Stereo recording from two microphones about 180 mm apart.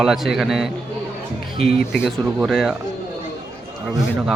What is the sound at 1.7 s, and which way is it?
Speech, 60° left (ahead or behind).